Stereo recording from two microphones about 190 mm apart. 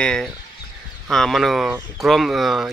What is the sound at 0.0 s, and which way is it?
A man's voice, 5° left (ahead or behind).